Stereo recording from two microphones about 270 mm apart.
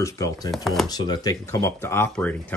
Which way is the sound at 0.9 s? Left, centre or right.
Centre.